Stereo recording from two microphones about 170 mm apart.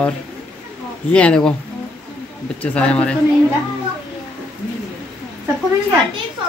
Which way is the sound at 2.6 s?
5° left (ahead or behind).